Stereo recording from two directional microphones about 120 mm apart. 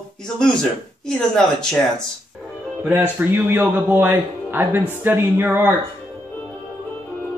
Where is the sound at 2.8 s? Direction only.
15° right (ahead or behind).